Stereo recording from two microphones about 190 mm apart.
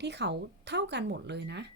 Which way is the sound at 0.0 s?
65° right (ahead or behind).